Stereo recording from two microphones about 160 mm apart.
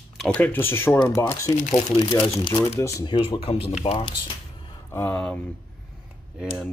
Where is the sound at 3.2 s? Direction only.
35° left (ahead or behind).